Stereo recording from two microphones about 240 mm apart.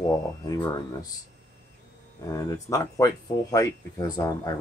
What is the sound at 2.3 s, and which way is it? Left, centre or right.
Speech, centre.